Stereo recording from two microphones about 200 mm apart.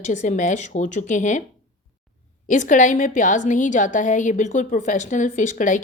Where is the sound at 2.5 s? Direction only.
40° left (ahead or behind).